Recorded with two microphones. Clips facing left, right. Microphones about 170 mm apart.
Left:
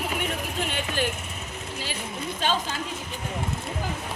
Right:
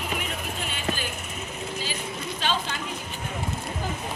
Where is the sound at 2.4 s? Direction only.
45° left (ahead or behind).